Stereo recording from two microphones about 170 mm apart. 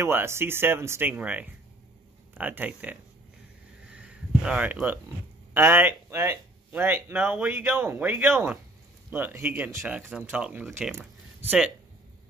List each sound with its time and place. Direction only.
0.0 s speech: 15° right (ahead or behind)
3.9 s a sound: 5° right (ahead or behind)
5.5 s speech: 15° right (ahead or behind)